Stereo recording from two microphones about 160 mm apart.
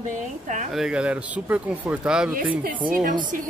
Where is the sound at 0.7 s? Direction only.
5° right (ahead or behind).